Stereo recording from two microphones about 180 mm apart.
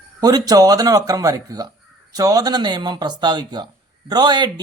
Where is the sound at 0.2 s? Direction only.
20° right (ahead or behind).